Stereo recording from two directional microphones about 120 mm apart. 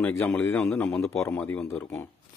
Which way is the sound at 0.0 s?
20° left (ahead or behind).